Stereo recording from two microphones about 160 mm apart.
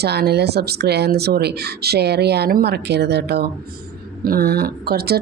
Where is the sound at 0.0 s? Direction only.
90° right.